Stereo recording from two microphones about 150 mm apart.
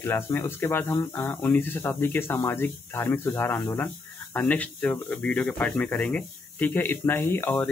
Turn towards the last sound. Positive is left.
turn(degrees=15)  # may be behind; listen again after turning